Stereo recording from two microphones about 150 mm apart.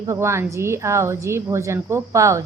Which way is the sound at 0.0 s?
20° right (ahead or behind).